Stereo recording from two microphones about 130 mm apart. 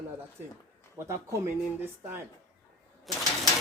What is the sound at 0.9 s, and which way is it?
Speech, 20° right (ahead or behind).